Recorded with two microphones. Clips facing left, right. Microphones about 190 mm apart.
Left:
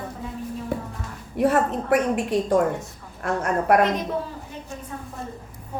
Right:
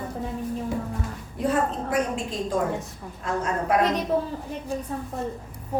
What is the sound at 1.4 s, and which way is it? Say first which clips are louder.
A woman's voice: left 4 dB; 70° left (ahead or behind).